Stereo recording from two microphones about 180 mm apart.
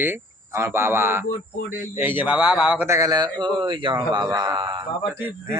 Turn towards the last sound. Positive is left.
turn(degrees=-10)  # may be behind; listen again after turning